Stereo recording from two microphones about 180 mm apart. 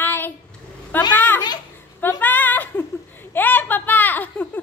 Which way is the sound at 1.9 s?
10° left (ahead or behind).